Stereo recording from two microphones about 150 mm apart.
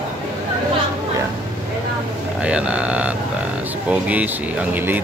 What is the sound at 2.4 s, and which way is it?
Speech, 5° right (ahead or behind).